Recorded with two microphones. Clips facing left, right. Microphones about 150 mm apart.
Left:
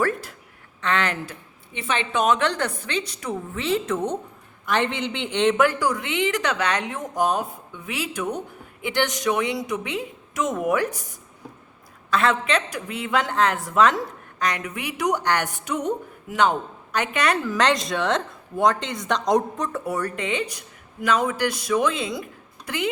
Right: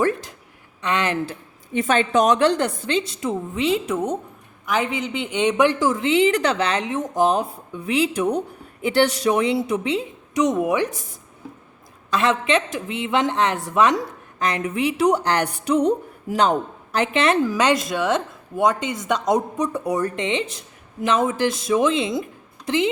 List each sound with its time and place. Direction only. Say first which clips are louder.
0.8 s speech: right 2 dB; 15° right (ahead or behind)
1.7 s a woman's voice: right 7 dB; 45° right (ahead or behind); by 10.0 s 30° right (ahead or behind)
12.1 s a woman's voice: right 2 dB; 20° right (ahead or behind); by 16.6 s 35° right (ahead or behind)
17.0 s a woman's voice: right 5 dB; 25° right (ahead or behind)
17.5 s a woman's voice: right 2 dB; 10° right (ahead or behind)